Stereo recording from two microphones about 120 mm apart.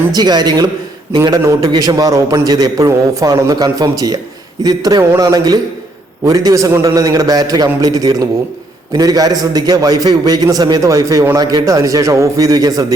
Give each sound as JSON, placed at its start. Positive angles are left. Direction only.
{"t": 0.1, "sound": "a man's voice", "side_deg": -35}